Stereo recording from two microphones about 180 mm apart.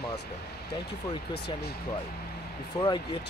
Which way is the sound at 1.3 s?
65° left (ahead or behind).